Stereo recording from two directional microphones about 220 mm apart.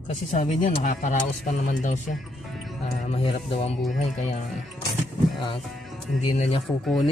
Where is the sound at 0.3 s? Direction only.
30° left (ahead or behind).